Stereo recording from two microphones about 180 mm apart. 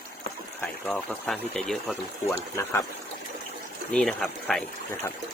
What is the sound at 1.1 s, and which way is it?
Speech, 5° right (ahead or behind).